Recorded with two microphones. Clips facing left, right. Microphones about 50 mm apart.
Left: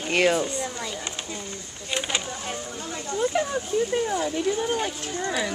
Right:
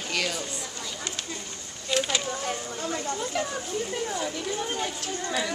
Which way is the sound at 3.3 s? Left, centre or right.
Left.